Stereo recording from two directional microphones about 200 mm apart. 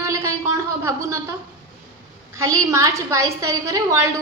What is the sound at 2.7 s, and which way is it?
A woman's voice, 15° right (ahead or behind).